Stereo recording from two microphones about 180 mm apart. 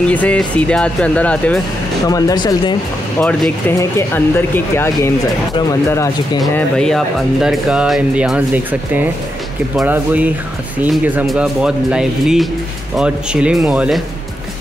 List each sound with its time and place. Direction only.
0.1 s speech: 10° left (ahead or behind)
2.0 s speech: 20° left (ahead or behind)
3.2 s speech: 5° left (ahead or behind)
6.5 s speech: 5° left (ahead or behind)
9.8 s speech: 10° right (ahead or behind)